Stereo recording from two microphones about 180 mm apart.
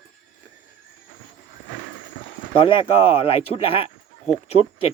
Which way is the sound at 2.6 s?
30° left (ahead or behind).